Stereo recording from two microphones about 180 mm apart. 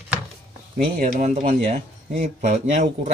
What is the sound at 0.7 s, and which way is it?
Speech, 40° right (ahead or behind).